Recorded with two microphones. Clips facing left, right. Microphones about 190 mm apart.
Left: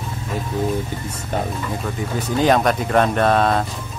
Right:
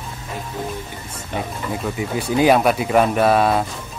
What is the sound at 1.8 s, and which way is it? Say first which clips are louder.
Speech: right 1 dB; 10° right (ahead or behind).